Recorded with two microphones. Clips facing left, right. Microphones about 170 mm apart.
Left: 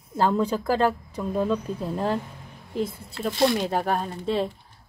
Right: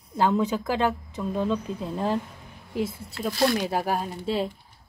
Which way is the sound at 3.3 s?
25° left (ahead or behind).